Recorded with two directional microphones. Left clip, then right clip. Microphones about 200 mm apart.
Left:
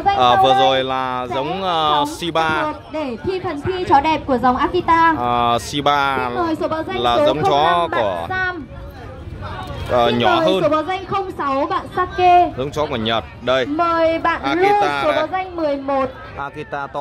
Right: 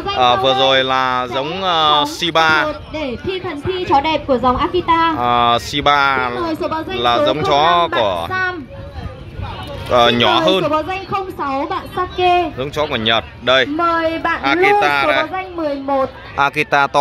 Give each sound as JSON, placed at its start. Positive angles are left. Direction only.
{"t": 0.2, "sound": "speech", "side_deg": 10}
{"t": 3.9, "sound": "speech", "side_deg": -5}
{"t": 6.4, "sound": "a woman's voice", "side_deg": -20}
{"t": 7.0, "sound": "speech", "side_deg": 5}
{"t": 9.8, "sound": "speech", "side_deg": 0}
{"t": 10.6, "sound": "a woman's voice", "side_deg": -35}
{"t": 11.9, "sound": "speech", "side_deg": -35}
{"t": 12.5, "sound": "speech", "side_deg": 10}
{"t": 13.7, "sound": "speech", "side_deg": -35}
{"t": 14.4, "sound": "speech", "side_deg": 0}
{"t": 15.3, "sound": "a man's voice", "side_deg": -40}
{"t": 16.3, "sound": "a woman's voice", "side_deg": -20}